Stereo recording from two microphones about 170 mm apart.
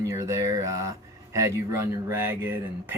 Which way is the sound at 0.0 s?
20° right (ahead or behind).